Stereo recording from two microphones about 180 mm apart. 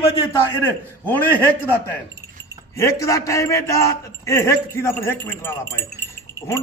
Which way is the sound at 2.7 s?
15° left (ahead or behind).